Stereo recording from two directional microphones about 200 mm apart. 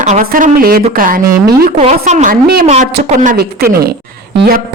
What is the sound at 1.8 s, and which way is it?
Speech, 30° right (ahead or behind).